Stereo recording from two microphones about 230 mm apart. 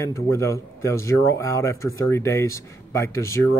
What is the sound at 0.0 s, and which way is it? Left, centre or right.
Speech, centre.